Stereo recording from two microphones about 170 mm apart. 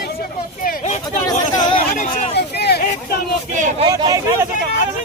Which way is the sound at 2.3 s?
70° left (ahead or behind).